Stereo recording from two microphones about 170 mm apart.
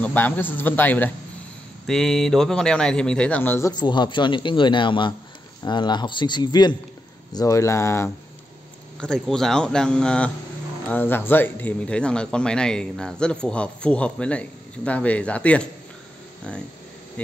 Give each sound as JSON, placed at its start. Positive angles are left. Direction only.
{"t": 0.0, "sound": "a man's voice", "side_deg": 10}
{"t": 9.0, "sound": "speech", "side_deg": 5}